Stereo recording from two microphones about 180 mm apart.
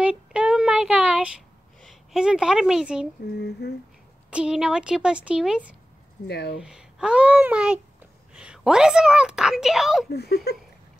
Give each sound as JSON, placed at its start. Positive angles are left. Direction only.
{"t": 0.0, "sound": "child singing", "side_deg": -5}
{"t": 1.8, "sound": "a woman's voice", "side_deg": 0}
{"t": 3.3, "sound": "a sound", "side_deg": 65}
{"t": 4.3, "sound": "speech", "side_deg": -5}
{"t": 6.2, "sound": "a sound", "side_deg": 65}
{"t": 6.6, "sound": "speech", "side_deg": -5}
{"t": 10.1, "sound": "speech", "side_deg": 65}